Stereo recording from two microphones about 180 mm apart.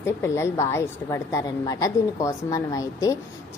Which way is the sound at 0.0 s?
15° left (ahead or behind).